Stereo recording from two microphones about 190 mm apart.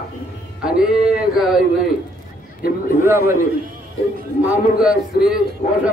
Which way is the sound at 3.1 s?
15° right (ahead or behind).